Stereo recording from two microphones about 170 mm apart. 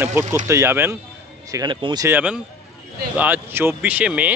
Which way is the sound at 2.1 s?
5° right (ahead or behind).